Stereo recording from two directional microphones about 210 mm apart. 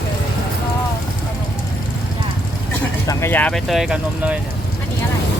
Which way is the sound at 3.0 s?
10° left (ahead or behind).